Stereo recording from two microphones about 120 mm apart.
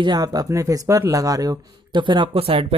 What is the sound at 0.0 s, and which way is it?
Speech, 35° right (ahead or behind).